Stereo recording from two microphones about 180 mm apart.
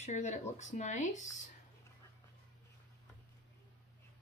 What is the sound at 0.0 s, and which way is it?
Speech, 40° left (ahead or behind).